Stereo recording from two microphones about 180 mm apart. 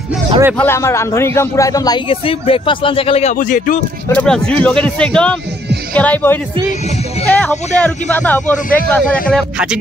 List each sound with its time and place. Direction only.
0.6 s a man's voice: 15° left (ahead or behind); by 3.3 s 35° left (ahead or behind)
3.3 s speech: 50° left (ahead or behind)
4.1 s speech: 5° left (ahead or behind)